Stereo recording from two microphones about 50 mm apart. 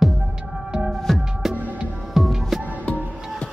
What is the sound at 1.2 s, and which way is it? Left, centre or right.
Music, centre.